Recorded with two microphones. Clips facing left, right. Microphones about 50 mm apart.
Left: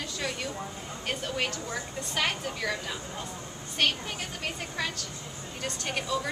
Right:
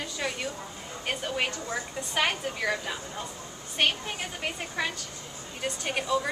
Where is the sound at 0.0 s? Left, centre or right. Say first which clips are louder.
Right 1 dB; centre.